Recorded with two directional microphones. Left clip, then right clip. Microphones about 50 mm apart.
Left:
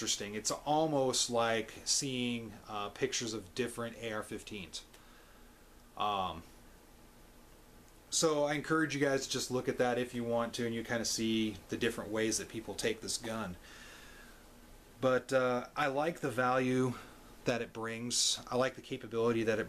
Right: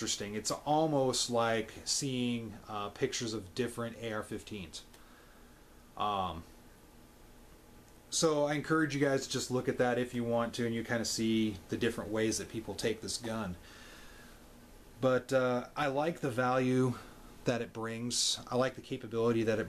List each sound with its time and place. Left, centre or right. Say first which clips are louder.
0.0 s speech: even; centre
5.9 s speech: right 1 dB; centre
8.1 s speech: right 1 dB; left